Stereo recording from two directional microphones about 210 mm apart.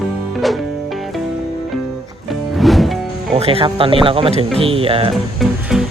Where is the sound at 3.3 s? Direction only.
25° right (ahead or behind).